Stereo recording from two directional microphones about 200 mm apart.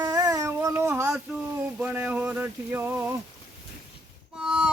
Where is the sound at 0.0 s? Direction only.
20° right (ahead or behind).